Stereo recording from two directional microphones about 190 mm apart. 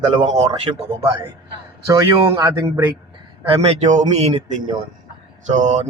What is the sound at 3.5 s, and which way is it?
A man's voice, 35° right (ahead or behind).